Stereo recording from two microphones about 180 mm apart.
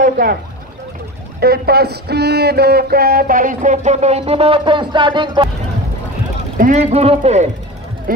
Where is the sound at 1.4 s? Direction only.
60° right (ahead or behind); by 5.5 s 25° right (ahead or behind).